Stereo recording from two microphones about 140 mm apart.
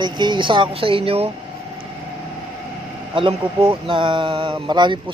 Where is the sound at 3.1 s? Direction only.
40° right (ahead or behind).